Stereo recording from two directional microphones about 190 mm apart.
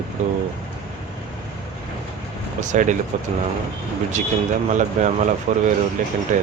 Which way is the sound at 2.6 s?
40° right (ahead or behind).